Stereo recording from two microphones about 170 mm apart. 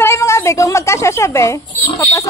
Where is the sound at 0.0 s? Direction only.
15° left (ahead or behind).